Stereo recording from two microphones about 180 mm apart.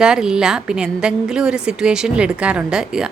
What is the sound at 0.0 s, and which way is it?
A woman's voice, 5° right (ahead or behind).